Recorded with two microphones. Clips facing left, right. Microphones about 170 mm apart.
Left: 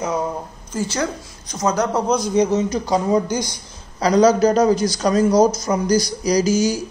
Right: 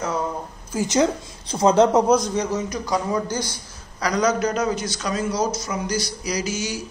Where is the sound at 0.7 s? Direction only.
20° right (ahead or behind).